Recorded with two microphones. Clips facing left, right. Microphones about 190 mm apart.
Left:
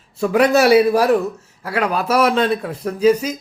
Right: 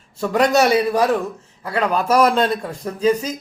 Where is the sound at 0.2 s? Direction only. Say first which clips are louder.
Left 2 dB; 5° left (ahead or behind).